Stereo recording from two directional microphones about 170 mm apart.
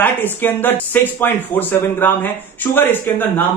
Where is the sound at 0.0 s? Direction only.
10° left (ahead or behind).